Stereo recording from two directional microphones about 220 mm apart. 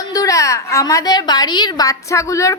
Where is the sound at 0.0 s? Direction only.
15° left (ahead or behind).